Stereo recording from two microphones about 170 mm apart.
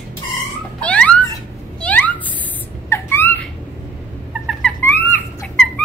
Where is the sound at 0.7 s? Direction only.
5° left (ahead or behind).